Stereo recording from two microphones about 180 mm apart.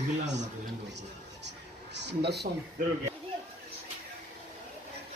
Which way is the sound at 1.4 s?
75° right (ahead or behind).